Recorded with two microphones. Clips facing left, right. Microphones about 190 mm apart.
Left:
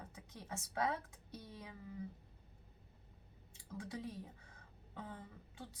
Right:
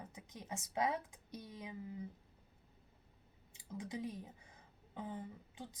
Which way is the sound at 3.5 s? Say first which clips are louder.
Right 2 dB; 15° right (ahead or behind).